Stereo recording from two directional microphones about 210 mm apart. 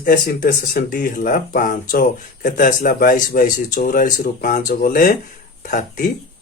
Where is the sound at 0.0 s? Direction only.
45° left (ahead or behind).